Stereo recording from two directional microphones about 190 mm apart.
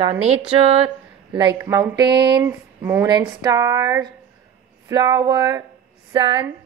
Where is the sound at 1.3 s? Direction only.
15° right (ahead or behind).